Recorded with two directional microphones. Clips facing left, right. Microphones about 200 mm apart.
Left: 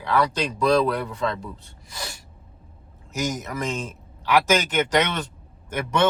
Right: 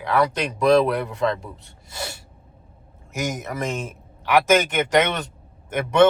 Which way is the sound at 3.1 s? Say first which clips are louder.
Even; 20° right (ahead or behind).